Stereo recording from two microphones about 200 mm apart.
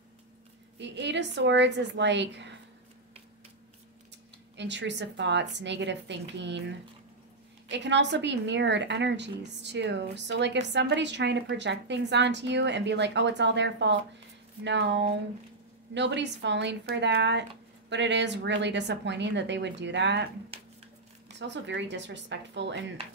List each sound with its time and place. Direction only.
0.7 s a woman's voice: 60° right (ahead or behind)
4.6 s a woman's voice: 60° right (ahead or behind)
7.7 s a woman's voice: 60° right (ahead or behind)
21.3 s a woman's voice: 60° right (ahead or behind)